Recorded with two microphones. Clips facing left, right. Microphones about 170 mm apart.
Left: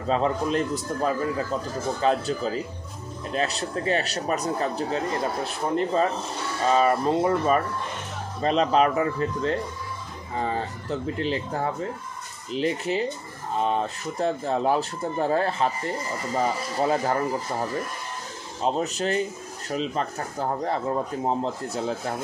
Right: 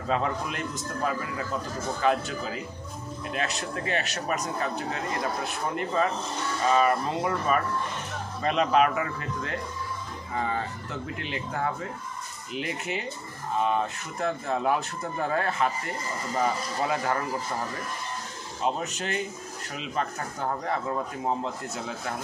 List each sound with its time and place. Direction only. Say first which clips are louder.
0.1 s a man's voice: left 5 dB; 30° left (ahead or behind)
16.9 s a man's voice: left 3 dB; 35° left (ahead or behind)
18.6 s a man's voice: left 4 dB; 35° left (ahead or behind)